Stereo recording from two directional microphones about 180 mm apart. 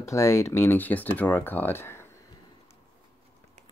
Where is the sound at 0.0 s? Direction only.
15° left (ahead or behind).